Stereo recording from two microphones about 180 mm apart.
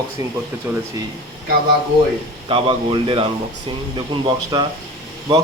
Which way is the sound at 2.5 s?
30° right (ahead or behind).